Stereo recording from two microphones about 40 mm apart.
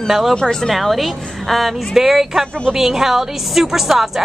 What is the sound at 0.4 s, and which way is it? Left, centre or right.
Speech, centre.